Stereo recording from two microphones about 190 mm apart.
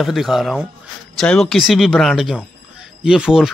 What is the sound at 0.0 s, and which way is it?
Speech, centre (ahead or behind).